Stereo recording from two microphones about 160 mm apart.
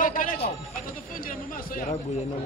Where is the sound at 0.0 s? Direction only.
55° left (ahead or behind).